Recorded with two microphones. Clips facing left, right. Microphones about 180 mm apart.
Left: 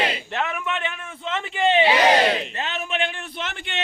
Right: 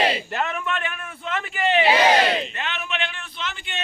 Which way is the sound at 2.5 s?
35° left (ahead or behind).